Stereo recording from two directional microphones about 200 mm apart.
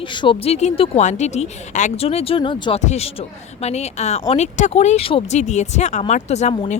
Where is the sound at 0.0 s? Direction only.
25° left (ahead or behind).